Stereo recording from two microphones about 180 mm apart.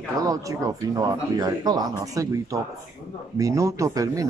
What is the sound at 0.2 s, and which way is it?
Speech, 20° right (ahead or behind).